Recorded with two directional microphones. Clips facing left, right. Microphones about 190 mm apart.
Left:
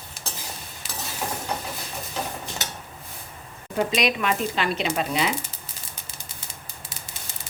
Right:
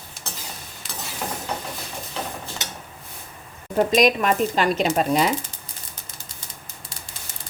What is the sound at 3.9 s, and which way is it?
Dishes, 45° right (ahead or behind).